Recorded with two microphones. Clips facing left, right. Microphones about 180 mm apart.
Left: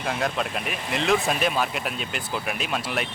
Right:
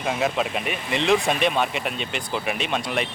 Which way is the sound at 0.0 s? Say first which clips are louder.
Right 3 dB; centre (ahead or behind).